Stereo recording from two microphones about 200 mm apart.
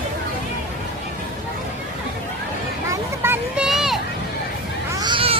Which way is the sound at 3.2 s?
5° right (ahead or behind).